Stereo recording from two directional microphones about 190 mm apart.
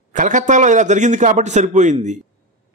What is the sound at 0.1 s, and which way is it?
A man's voice, 40° right (ahead or behind).